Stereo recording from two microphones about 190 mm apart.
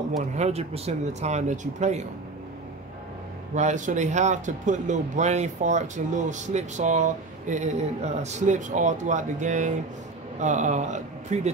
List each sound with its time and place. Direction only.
0.4 s speech: 35° right (ahead or behind)
3.5 s speech: 40° right (ahead or behind)